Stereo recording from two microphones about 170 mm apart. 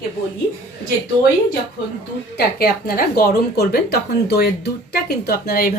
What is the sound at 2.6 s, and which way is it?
A woman's voice, 60° left (ahead or behind).